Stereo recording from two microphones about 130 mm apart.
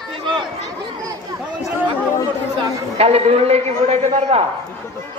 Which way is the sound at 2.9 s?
50° right (ahead or behind).